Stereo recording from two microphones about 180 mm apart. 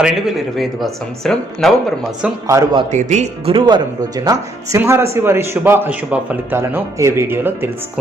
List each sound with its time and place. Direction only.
0.0 s speech: centre (ahead or behind)
2.2 s speech: 15° right (ahead or behind)
2.9 s speech: 40° right (ahead or behind)
3.5 s speech: 25° right (ahead or behind)